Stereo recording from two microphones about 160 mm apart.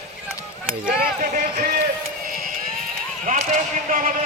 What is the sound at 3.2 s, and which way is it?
Speech, 50° right (ahead or behind).